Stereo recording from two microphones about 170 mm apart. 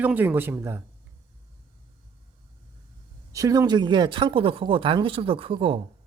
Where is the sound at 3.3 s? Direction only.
20° right (ahead or behind).